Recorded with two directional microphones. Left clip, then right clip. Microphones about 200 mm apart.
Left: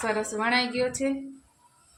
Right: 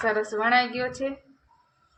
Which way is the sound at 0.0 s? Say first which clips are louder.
Right 3 dB; 10° right (ahead or behind).